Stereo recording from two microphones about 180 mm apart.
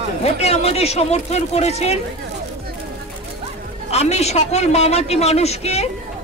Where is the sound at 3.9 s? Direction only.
35° left (ahead or behind).